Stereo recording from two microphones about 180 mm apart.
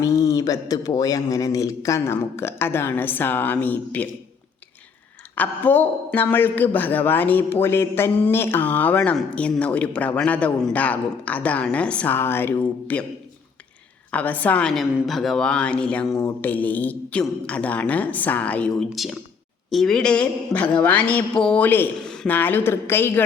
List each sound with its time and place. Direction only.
0.0 s speech: 20° left (ahead or behind)
5.3 s speech: 10° left (ahead or behind)
14.1 s speech: 10° left (ahead or behind)